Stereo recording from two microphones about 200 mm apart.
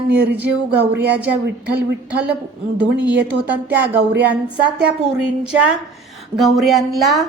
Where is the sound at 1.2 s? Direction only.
5° right (ahead or behind).